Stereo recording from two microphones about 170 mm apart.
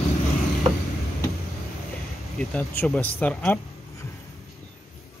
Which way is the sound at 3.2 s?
10° left (ahead or behind).